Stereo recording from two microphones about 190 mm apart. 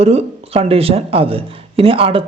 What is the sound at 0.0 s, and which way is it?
Speech, 35° right (ahead or behind).